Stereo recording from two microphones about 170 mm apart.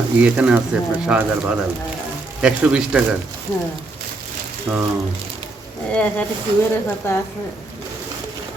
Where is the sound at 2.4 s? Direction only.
5° right (ahead or behind).